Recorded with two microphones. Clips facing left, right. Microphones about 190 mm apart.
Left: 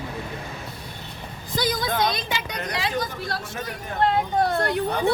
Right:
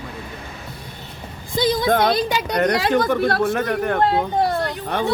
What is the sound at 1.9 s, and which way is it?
Speech, 60° right (ahead or behind).